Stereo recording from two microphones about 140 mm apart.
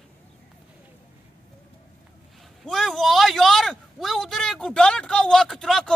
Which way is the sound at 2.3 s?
Centre (ahead or behind).